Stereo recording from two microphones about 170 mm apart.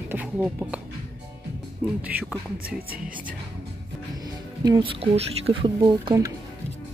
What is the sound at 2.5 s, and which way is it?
Speech, 60° right (ahead or behind).